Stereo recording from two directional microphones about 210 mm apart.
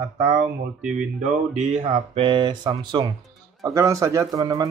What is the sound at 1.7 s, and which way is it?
Speech, 30° right (ahead or behind).